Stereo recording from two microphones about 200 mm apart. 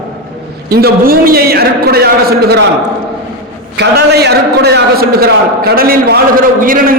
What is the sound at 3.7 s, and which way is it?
A man's voice, 55° right (ahead or behind).